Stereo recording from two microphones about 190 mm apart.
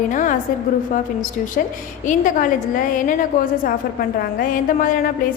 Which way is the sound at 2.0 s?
40° left (ahead or behind).